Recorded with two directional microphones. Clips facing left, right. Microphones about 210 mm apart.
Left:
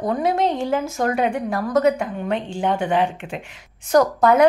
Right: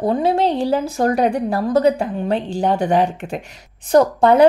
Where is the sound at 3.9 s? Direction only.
30° right (ahead or behind).